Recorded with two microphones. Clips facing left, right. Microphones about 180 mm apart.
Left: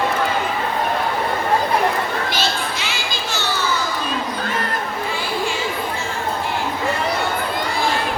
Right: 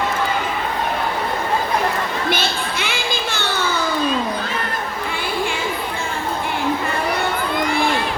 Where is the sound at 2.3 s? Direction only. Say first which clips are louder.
Right 1 dB; 55° right (ahead or behind).